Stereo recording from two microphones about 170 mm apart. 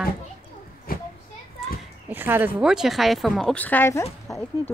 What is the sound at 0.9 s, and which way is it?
Children playing, 60° left (ahead or behind).